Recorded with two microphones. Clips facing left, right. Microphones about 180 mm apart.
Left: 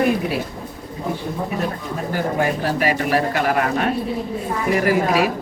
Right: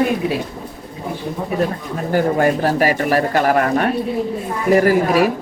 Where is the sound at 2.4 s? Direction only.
45° right (ahead or behind).